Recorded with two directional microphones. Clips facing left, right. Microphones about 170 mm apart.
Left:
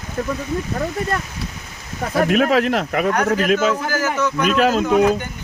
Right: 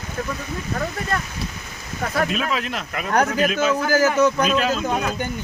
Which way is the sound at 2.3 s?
65° left (ahead or behind).